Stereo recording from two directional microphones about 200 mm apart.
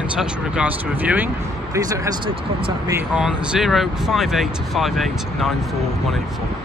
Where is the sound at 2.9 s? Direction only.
5° right (ahead or behind).